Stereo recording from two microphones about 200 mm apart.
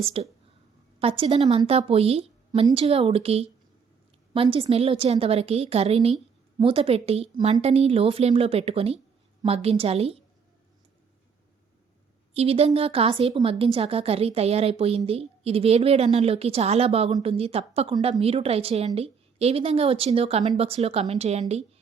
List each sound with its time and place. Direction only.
0.0 s a woman's voice: 30° right (ahead or behind)
12.3 s a woman's voice: 30° right (ahead or behind)